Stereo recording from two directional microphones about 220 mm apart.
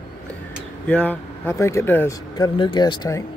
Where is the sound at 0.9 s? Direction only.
10° left (ahead or behind).